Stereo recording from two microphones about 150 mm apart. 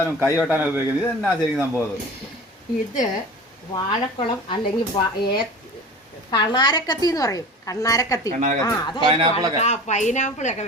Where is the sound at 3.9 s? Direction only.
30° left (ahead or behind).